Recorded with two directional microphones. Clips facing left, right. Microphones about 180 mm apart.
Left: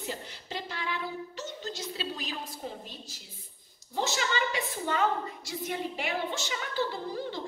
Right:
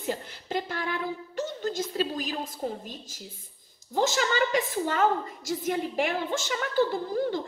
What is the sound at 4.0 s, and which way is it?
A woman's voice, 45° right (ahead or behind).